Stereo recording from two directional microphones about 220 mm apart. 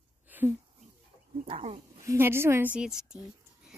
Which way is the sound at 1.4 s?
30° right (ahead or behind).